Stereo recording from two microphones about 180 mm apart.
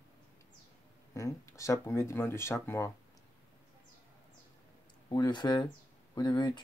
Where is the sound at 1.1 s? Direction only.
15° left (ahead or behind).